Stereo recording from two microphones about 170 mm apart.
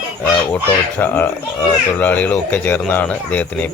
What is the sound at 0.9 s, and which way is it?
Speech, 10° left (ahead or behind).